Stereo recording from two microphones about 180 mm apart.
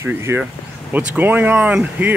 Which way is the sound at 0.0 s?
15° right (ahead or behind).